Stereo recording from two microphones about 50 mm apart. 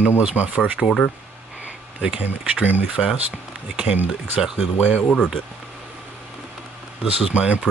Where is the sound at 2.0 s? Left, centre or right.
Right.